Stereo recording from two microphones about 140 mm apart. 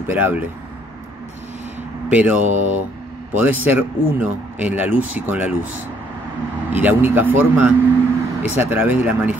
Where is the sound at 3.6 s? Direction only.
10° right (ahead or behind).